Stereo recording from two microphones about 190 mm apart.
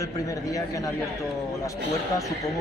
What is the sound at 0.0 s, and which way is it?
Speech, 15° left (ahead or behind).